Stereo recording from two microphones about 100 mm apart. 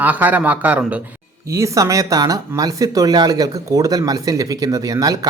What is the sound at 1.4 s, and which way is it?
Speech, 30° right (ahead or behind).